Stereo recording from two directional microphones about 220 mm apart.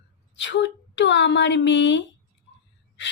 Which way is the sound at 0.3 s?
55° left (ahead or behind).